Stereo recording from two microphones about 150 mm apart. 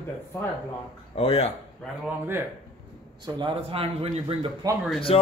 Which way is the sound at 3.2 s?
30° right (ahead or behind).